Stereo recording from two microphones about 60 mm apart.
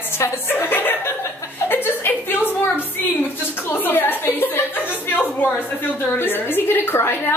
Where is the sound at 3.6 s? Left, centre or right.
Left.